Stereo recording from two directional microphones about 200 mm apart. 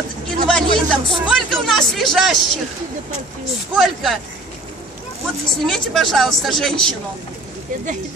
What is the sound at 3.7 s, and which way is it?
Speech, centre (ahead or behind).